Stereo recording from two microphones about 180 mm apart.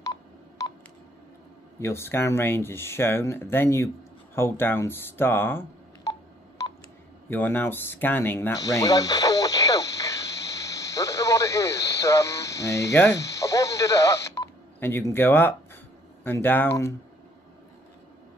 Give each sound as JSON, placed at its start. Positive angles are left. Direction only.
{"t": 0.0, "sound": "telephone dialing", "side_deg": 20}
{"t": 1.8, "sound": "speech", "side_deg": 15}
{"t": 7.2, "sound": "a sound", "side_deg": 10}
{"t": 13.2, "sound": "speech", "side_deg": 15}